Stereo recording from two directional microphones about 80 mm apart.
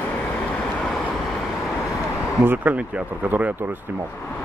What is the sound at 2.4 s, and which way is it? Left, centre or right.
Speech, centre.